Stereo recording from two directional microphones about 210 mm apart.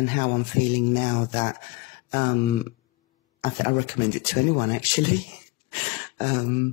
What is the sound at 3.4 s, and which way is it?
Speech, 45° left (ahead or behind).